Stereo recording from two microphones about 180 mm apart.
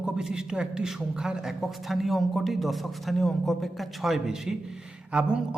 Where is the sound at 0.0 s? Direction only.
5° right (ahead or behind).